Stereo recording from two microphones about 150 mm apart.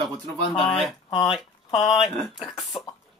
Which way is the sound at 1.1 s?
35° left (ahead or behind).